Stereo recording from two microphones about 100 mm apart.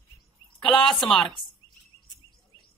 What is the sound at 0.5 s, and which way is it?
Speech, 10° left (ahead or behind).